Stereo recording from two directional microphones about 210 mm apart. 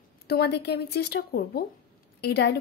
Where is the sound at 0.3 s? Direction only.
50° left (ahead or behind).